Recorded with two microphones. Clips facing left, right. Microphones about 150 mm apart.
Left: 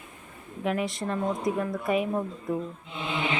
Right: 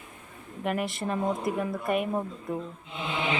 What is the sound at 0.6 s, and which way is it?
A woman's voice, centre (ahead or behind).